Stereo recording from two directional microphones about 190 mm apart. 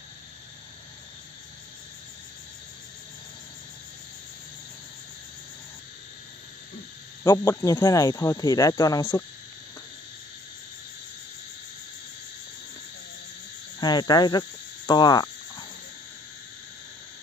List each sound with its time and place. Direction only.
7.2 s speech: 15° left (ahead or behind)
13.7 s speech: 20° left (ahead or behind)
14.9 s cricket: 20° left (ahead or behind)